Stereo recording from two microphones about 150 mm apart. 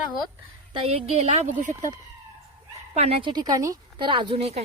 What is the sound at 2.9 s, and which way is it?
A woman's voice, 40° right (ahead or behind).